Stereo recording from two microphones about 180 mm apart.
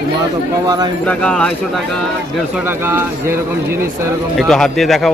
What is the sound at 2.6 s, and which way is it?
Speech, 10° right (ahead or behind).